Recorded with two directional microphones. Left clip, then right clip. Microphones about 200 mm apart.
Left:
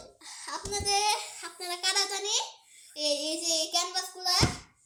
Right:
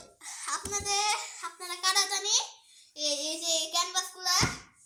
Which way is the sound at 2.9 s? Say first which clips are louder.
Left 2 dB; 25° right (ahead or behind).